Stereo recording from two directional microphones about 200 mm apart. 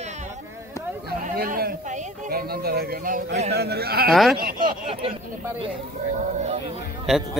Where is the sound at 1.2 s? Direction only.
40° right (ahead or behind).